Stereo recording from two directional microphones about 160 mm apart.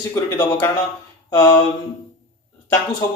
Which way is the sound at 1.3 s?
15° left (ahead or behind).